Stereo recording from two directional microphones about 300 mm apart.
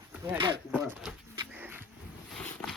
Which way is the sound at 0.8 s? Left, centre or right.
Centre.